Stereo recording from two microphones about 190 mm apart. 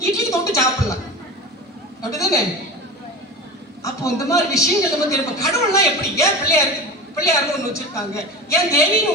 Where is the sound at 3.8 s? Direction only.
15° left (ahead or behind).